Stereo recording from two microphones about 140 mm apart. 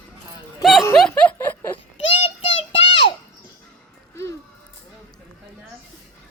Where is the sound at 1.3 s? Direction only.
20° left (ahead or behind).